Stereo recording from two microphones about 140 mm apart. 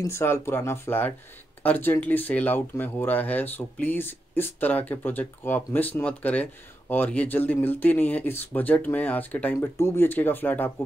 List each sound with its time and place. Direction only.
0.0 s speech: 20° left (ahead or behind)